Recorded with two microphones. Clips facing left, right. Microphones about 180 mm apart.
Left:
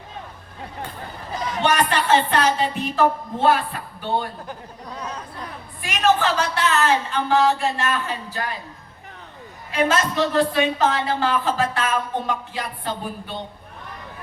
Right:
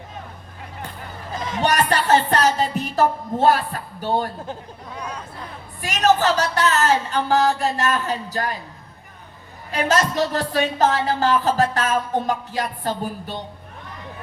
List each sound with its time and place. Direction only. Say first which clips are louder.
1.6 s speech: right 1 dB; 40° right (ahead or behind)
4.9 s chatter: even; 10° right (ahead or behind)
5.8 s speech: right 2 dB; 40° right (ahead or behind)
9.7 s speech: even; 40° right (ahead or behind)